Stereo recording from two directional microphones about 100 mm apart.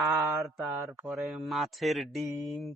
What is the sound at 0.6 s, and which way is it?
Speech, 25° right (ahead or behind).